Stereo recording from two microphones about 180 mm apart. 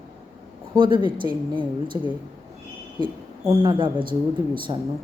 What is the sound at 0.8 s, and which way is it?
Speech, 25° right (ahead or behind).